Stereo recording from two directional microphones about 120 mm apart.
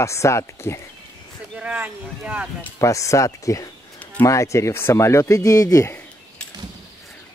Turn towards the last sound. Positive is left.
turn(degrees=25)  # may be behind; listen again after turning